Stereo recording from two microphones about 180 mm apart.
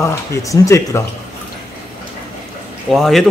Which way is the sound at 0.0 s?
15° left (ahead or behind).